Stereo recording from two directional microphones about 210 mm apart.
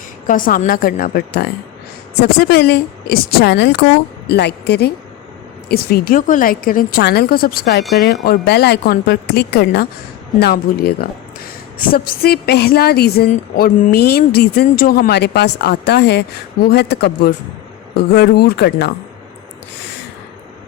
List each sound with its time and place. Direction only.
0.3 s a woman's voice: 40° left (ahead or behind)